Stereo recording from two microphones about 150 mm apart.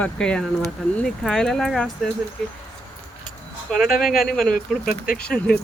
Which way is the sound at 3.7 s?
5° left (ahead or behind).